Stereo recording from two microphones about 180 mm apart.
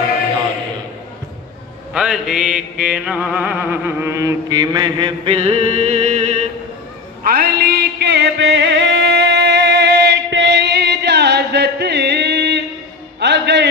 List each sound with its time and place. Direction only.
2.0 s music: 5° right (ahead or behind); by 6.4 s 40° right (ahead or behind)
7.2 s music: 60° right (ahead or behind)